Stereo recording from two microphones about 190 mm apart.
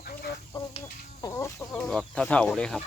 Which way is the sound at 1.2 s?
15° left (ahead or behind).